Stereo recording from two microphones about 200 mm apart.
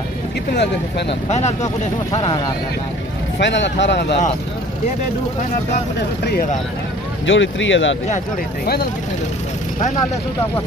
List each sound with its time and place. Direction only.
0.5 s speech: 60° left (ahead or behind)
1.3 s speech: 35° left (ahead or behind)
3.3 s speech: 65° left (ahead or behind)
7.2 s speech: 70° left (ahead or behind)